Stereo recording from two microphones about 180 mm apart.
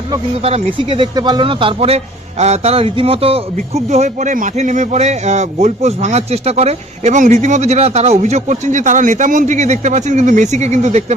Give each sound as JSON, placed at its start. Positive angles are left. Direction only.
{"t": 0.4, "sound": "a man's voice", "side_deg": -30}